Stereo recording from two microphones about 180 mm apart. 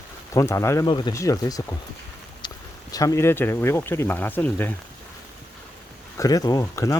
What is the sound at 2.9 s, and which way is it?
Speech, 15° left (ahead or behind).